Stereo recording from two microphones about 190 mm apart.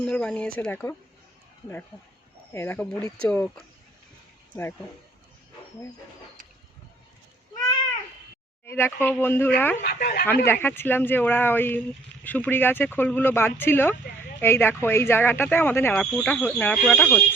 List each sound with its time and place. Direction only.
0.0 s speech: 5° left (ahead or behind)
2.5 s speech: 10° left (ahead or behind)
8.6 s speech: 10° left (ahead or behind)
9.8 s speech: 55° left (ahead or behind)
10.4 s speech: 10° left (ahead or behind)